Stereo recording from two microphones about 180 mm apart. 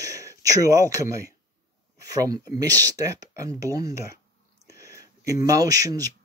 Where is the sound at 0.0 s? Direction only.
20° right (ahead or behind).